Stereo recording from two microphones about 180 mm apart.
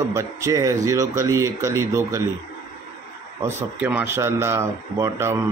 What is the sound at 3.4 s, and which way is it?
Speech, 15° right (ahead or behind).